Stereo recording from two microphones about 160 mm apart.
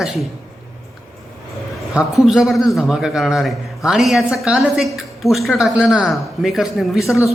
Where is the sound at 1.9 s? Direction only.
Centre (ahead or behind).